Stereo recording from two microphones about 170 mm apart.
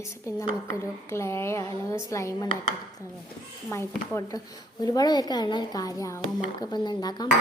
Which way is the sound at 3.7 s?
15° left (ahead or behind).